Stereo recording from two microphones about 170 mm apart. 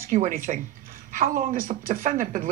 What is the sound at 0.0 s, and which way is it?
Speech, 55° right (ahead or behind).